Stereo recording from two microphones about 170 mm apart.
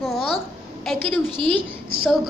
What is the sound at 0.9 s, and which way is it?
Speech, 10° left (ahead or behind).